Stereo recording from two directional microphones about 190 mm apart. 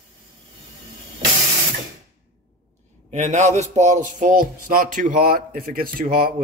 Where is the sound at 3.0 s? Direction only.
40° right (ahead or behind).